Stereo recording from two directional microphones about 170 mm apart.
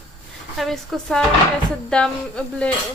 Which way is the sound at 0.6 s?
Centre (ahead or behind).